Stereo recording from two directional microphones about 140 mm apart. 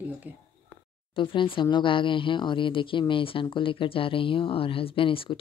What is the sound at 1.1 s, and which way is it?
Speech, 35° left (ahead or behind).